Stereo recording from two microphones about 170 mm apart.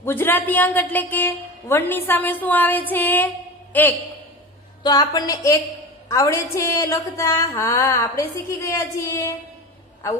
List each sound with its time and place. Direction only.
0.0 s a man's voice: 10° left (ahead or behind)
4.8 s a woman's voice: 25° left (ahead or behind)